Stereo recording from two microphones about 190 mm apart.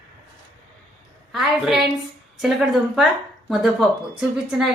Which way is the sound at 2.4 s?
Centre (ahead or behind).